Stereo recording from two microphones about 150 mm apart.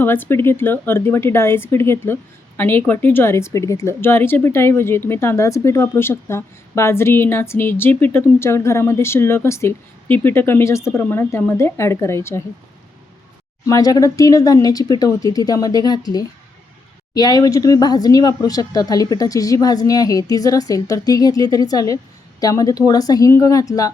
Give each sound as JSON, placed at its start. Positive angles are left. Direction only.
{"t": 0.0, "sound": "speech", "side_deg": 15}
{"t": 13.7, "sound": "speech", "side_deg": 25}